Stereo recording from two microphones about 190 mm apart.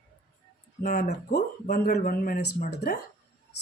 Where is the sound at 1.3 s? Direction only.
55° left (ahead or behind).